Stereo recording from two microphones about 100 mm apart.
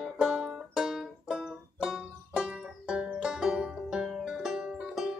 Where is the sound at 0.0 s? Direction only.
5° right (ahead or behind).